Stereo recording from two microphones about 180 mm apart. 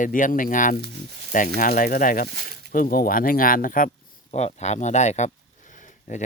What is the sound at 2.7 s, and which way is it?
Speech, 50° left (ahead or behind).